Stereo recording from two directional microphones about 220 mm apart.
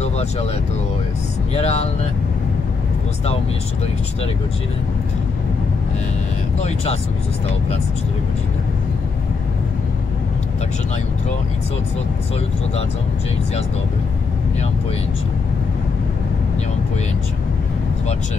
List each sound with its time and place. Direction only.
0.0 s vehicle: 30° left (ahead or behind)
1.5 s speech: 30° left (ahead or behind)
6.6 s speech: 25° left (ahead or behind)